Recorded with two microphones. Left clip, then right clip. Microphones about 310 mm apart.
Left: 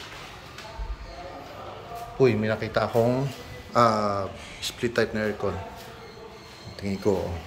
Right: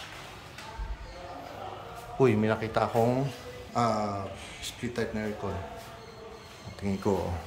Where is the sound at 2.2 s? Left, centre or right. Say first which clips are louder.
Left 3 dB; centre.